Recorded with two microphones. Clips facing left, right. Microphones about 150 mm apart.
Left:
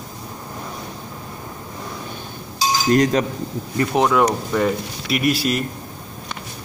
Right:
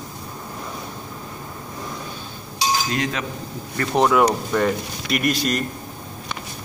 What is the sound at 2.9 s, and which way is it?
Speech, 40° left (ahead or behind).